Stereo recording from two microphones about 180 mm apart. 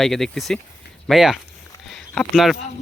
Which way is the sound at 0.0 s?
Centre (ahead or behind).